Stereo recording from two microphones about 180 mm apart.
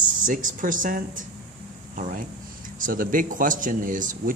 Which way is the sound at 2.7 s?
50° right (ahead or behind).